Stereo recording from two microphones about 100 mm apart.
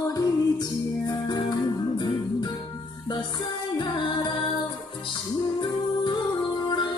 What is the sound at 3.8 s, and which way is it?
Music, 45° left (ahead or behind).